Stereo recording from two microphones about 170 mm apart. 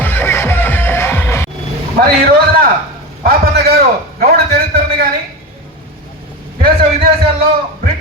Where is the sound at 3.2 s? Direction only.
60° right (ahead or behind).